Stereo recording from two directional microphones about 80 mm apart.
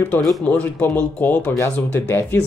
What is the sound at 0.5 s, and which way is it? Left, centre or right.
Speech, centre.